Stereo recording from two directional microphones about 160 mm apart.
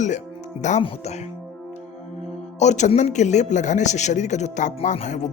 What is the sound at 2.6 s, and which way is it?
Speech, 50° left (ahead or behind).